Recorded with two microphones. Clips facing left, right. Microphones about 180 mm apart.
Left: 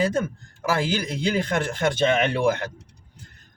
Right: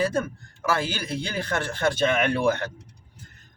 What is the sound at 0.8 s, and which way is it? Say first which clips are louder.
Speech: left 4 dB; 15° left (ahead or behind).